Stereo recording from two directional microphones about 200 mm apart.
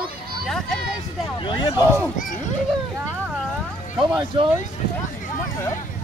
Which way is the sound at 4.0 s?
5° right (ahead or behind).